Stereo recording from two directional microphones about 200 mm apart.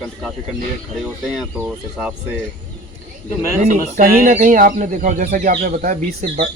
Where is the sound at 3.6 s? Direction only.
45° right (ahead or behind).